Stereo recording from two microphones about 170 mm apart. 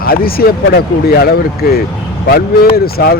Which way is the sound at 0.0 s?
60° left (ahead or behind).